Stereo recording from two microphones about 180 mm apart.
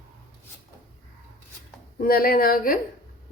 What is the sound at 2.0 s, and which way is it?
Speech, 55° left (ahead or behind).